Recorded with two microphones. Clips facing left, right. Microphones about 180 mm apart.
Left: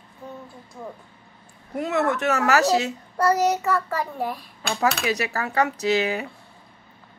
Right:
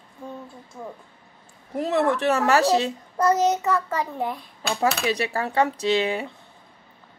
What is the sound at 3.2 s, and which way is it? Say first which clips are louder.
Speech: even; 20° right (ahead or behind).